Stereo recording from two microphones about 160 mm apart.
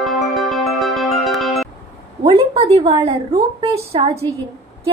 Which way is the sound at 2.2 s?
30° right (ahead or behind).